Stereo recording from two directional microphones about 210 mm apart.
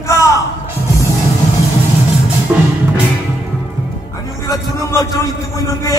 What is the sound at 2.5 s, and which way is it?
Music, 10° right (ahead or behind).